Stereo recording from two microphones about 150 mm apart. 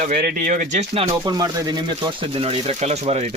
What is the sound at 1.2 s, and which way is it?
Speech, 25° right (ahead or behind).